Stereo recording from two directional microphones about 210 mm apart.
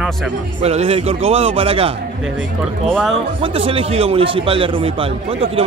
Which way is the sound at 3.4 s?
25° right (ahead or behind).